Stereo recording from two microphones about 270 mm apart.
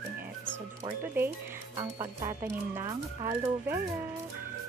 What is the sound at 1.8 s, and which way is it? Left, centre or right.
Speech, centre.